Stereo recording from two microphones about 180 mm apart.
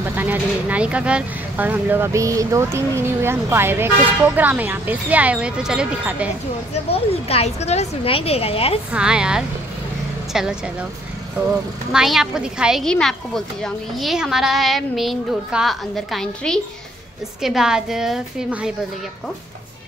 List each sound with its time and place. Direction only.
0.0 s speech: 10° right (ahead or behind)
6.7 s a woman's voice: 35° left (ahead or behind)
8.9 s a woman's voice: 5° right (ahead or behind)
11.9 s a woman's voice: centre (ahead or behind)